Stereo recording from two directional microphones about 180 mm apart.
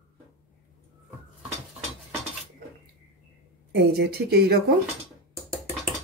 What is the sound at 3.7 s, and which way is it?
Speech, 60° right (ahead or behind).